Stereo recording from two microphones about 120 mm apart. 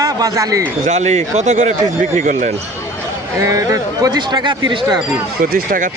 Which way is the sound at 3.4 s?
25° right (ahead or behind).